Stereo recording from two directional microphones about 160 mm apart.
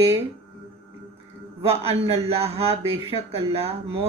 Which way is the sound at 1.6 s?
40° right (ahead or behind).